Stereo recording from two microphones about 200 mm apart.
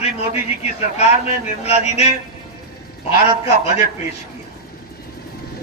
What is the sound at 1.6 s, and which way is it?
Speech, 30° left (ahead or behind).